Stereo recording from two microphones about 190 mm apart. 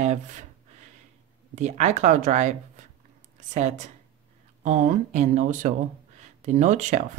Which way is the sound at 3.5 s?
40° right (ahead or behind).